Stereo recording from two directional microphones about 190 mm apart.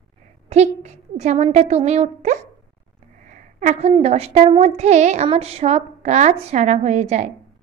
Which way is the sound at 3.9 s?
35° right (ahead or behind).